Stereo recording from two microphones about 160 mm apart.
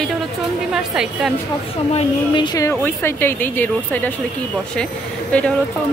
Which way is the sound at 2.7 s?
15° left (ahead or behind).